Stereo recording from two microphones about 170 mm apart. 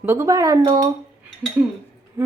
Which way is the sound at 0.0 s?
15° right (ahead or behind).